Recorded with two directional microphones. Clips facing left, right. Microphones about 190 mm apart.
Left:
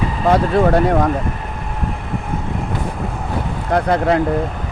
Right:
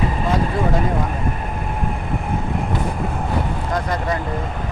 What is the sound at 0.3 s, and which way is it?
Speech, 70° left (ahead or behind).